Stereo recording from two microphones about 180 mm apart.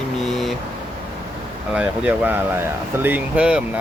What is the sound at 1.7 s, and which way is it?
Speech, 5° right (ahead or behind).